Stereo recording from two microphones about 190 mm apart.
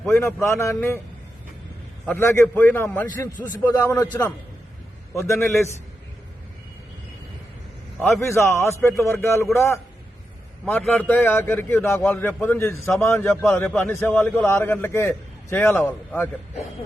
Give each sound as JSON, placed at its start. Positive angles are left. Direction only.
{"t": 0.1, "sound": "a man's voice", "side_deg": 15}
{"t": 2.0, "sound": "a man's voice", "side_deg": 10}
{"t": 8.2, "sound": "a man's voice", "side_deg": 15}
{"t": 12.8, "sound": "a man's voice", "side_deg": 0}
{"t": 13.1, "sound": "a man's voice", "side_deg": 10}